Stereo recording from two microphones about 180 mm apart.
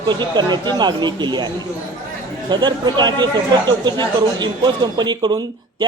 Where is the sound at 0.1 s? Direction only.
25° right (ahead or behind).